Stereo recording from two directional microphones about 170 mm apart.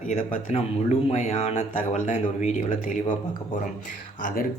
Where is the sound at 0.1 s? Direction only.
35° left (ahead or behind).